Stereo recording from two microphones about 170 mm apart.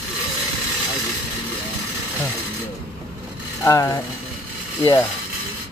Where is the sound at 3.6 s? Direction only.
20° left (ahead or behind).